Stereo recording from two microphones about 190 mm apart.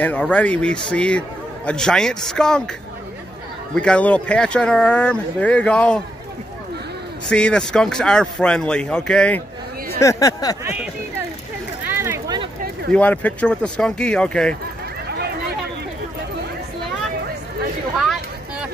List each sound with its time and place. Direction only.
0.0 s speech: 5° left (ahead or behind)
3.7 s speech: 5° left (ahead or behind)
7.2 s speech: 5° left (ahead or behind)
9.9 s speech: 15° left (ahead or behind)
10.6 s speech: 10° right (ahead or behind)
11.9 s a sound: 10° right (ahead or behind)
12.9 s speech: 10° left (ahead or behind)
15.0 s a sound: 60° right (ahead or behind)